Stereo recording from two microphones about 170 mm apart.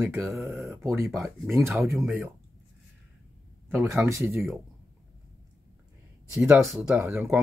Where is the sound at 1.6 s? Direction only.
15° right (ahead or behind).